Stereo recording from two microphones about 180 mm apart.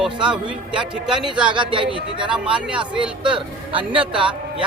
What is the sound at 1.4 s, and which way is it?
A man's voice, 25° right (ahead or behind).